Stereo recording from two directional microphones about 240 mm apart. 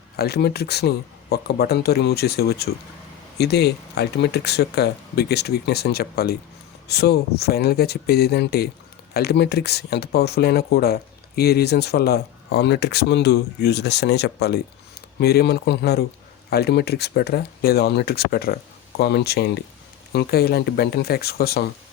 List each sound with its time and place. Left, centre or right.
0.2 s speech: left